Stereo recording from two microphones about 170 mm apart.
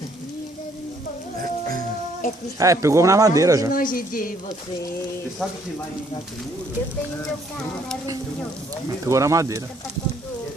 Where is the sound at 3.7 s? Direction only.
55° left (ahead or behind).